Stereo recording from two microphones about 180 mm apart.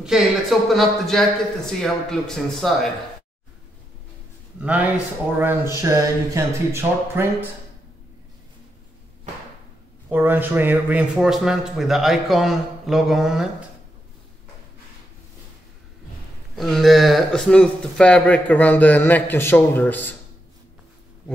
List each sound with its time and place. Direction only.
0.0 s speech: centre (ahead or behind)
4.6 s speech: 10° right (ahead or behind)
10.0 s speech: 10° right (ahead or behind)
16.5 s a man's voice: centre (ahead or behind)